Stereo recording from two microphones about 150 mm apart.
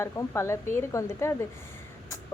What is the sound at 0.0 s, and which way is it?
A woman's voice, 20° left (ahead or behind).